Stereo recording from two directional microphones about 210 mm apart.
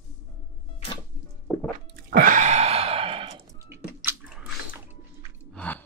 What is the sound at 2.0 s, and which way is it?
Sigh, 40° right (ahead or behind).